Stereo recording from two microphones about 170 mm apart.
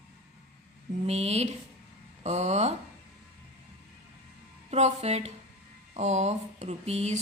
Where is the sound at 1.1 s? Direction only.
40° right (ahead or behind).